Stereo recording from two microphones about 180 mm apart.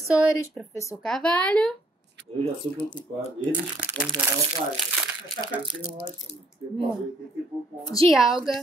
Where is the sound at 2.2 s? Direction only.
70° right (ahead or behind).